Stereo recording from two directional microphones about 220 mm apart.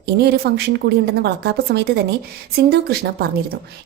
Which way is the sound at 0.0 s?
45° right (ahead or behind).